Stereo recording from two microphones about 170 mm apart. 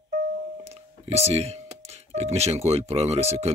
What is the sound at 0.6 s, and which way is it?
Speech, 40° right (ahead or behind).